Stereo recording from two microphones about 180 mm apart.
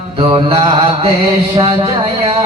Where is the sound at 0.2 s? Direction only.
30° right (ahead or behind).